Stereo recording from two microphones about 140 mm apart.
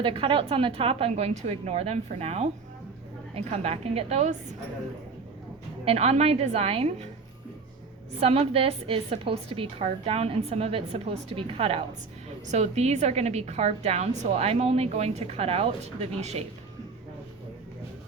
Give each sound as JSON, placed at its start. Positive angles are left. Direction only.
{"t": 0.0, "sound": "a woman's voice", "side_deg": -40}
{"t": 5.8, "sound": "a woman's voice", "side_deg": -50}
{"t": 8.2, "sound": "a woman's voice", "side_deg": -45}